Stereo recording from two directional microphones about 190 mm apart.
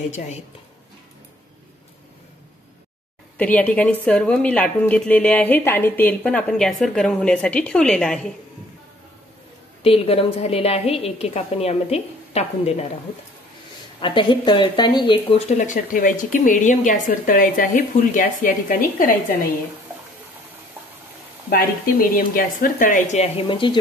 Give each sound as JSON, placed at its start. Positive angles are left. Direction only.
{"t": 3.3, "sound": "a woman's voice", "side_deg": 10}
{"t": 9.8, "sound": "speech", "side_deg": 30}
{"t": 14.0, "sound": "speech", "side_deg": 25}
{"t": 21.5, "sound": "speech", "side_deg": 50}